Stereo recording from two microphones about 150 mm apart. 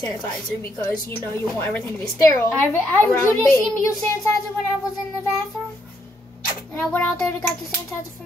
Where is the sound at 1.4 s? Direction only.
10° left (ahead or behind).